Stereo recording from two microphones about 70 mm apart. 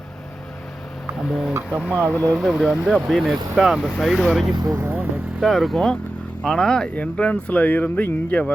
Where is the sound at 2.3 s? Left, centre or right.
Centre.